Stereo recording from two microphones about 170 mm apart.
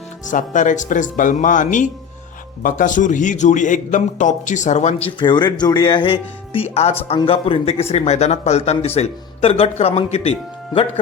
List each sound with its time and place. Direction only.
0.3 s a man's voice: 50° left (ahead or behind)
5.2 s speech: 25° left (ahead or behind)